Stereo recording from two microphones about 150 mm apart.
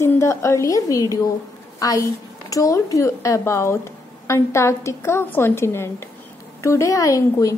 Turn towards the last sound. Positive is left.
turn(degrees=20)  # may be behind; listen again after turning